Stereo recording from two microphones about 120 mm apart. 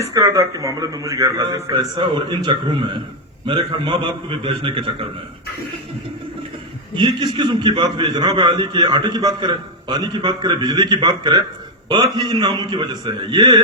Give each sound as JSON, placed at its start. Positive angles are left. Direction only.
{"t": 0.1, "sound": "a man's voice", "side_deg": -30}
{"t": 2.0, "sound": "a man's voice", "side_deg": -40}
{"t": 6.9, "sound": "a man's voice", "side_deg": -40}